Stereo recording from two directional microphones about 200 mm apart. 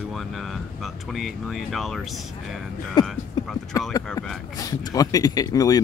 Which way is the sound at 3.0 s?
Centre (ahead or behind).